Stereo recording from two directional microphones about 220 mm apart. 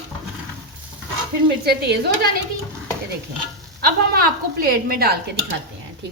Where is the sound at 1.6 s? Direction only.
50° right (ahead or behind).